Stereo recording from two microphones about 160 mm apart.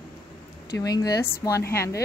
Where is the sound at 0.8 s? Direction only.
20° left (ahead or behind).